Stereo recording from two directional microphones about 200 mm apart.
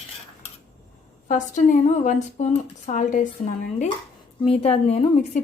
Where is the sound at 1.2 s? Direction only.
40° left (ahead or behind).